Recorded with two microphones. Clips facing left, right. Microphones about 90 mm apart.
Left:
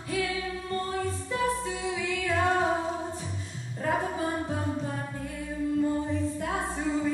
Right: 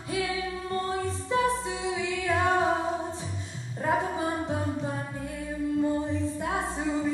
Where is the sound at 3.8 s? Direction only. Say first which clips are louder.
Right 1 dB; 20° right (ahead or behind).